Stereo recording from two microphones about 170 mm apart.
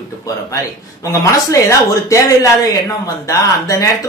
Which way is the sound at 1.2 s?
20° left (ahead or behind).